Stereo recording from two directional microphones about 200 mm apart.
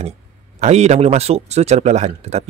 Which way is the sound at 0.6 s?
35° right (ahead or behind).